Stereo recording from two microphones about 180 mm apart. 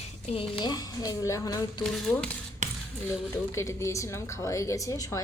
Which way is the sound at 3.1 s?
15° left (ahead or behind).